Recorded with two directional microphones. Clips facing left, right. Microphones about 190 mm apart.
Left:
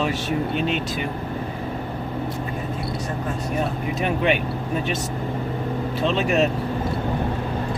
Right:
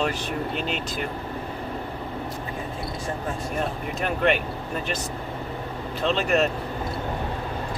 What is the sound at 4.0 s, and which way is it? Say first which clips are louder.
Speech: left 1 dB; centre (ahead or behind).